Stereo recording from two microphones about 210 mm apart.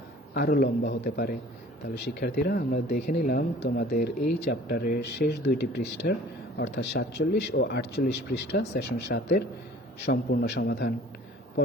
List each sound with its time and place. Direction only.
0.3 s speech: 45° left (ahead or behind)